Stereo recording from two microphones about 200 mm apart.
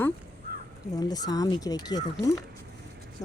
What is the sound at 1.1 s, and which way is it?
Speech, 20° left (ahead or behind).